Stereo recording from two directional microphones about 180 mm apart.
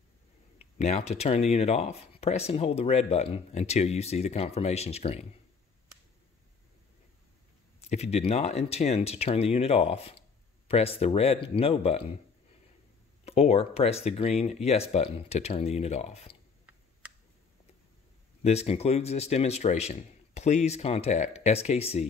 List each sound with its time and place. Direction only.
0.7 s speech: 40° left (ahead or behind)
7.9 s speech: 35° left (ahead or behind)
13.2 s speech: 35° left (ahead or behind)
18.4 s speech: 35° left (ahead or behind)